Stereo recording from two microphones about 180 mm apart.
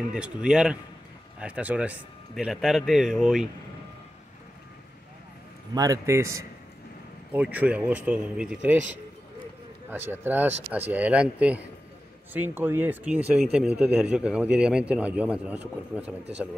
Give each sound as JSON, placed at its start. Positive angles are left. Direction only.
{"t": 0.1, "sound": "a man's voice", "side_deg": -5}
{"t": 5.8, "sound": "speech", "side_deg": -15}
{"t": 9.8, "sound": "speech", "side_deg": -10}